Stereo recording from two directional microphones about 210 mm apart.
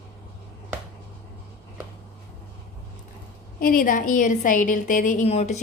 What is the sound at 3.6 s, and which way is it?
A woman's voice, 40° left (ahead or behind).